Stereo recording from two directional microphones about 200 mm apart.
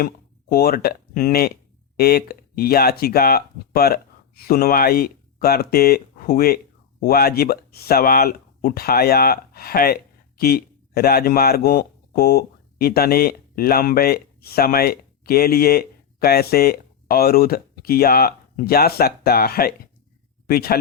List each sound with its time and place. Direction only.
0.0 s speech: 50° left (ahead or behind)